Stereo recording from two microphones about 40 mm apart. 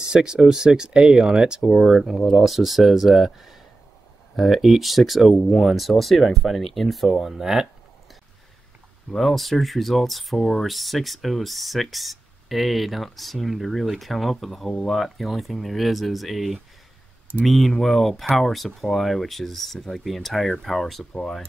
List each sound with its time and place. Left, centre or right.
0.0 s speech: centre
1.6 s speech: centre
9.1 s speech: centre